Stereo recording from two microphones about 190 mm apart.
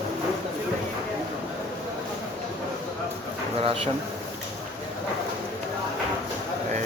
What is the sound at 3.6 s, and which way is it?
Speech, 30° right (ahead or behind).